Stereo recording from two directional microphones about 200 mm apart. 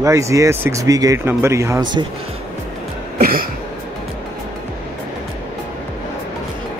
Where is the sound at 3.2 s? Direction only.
45° right (ahead or behind).